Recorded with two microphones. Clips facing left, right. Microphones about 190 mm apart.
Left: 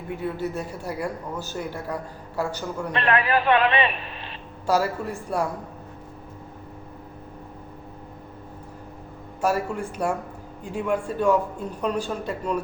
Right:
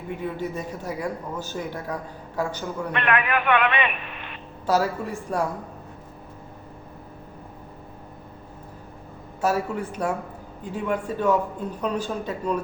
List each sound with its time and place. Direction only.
0.2 s a man's voice: 10° left (ahead or behind)
2.9 s a man's voice: 30° left (ahead or behind)
4.6 s a woman's voice: 10° left (ahead or behind)
9.4 s a man's voice: 10° left (ahead or behind)